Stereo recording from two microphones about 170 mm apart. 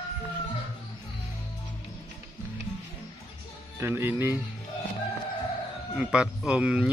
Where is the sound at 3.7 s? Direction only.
15° right (ahead or behind).